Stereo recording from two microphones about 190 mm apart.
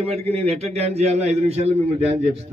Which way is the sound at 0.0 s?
30° right (ahead or behind).